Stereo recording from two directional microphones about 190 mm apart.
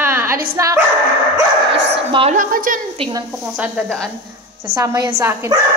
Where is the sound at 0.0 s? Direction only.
10° right (ahead or behind).